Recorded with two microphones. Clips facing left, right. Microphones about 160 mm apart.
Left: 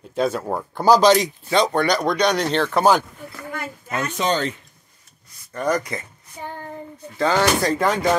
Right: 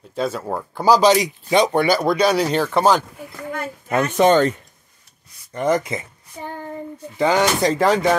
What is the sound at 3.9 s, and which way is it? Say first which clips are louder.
Speech: right 8 dB; 55° right (ahead or behind).